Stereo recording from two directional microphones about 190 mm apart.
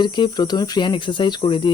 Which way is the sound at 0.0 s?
20° left (ahead or behind).